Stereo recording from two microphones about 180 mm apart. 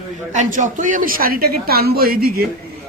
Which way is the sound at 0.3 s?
45° right (ahead or behind).